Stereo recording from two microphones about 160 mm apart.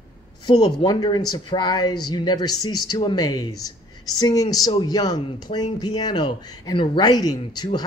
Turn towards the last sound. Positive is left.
turn(degrees=25)  # may be behind; listen again after turning